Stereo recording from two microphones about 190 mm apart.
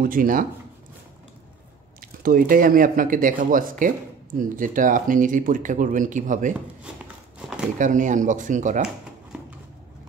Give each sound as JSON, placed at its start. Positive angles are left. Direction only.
{"t": 0.0, "sound": "speech", "side_deg": -45}
{"t": 2.0, "sound": "speech", "side_deg": -50}
{"t": 7.3, "sound": "a sound", "side_deg": -5}
{"t": 7.8, "sound": "speech", "side_deg": -40}